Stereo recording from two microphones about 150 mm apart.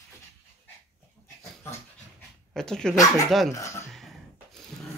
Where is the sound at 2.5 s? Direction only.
5° left (ahead or behind).